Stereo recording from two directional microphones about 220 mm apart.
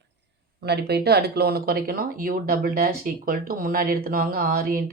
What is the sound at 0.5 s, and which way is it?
Speech, 50° right (ahead or behind).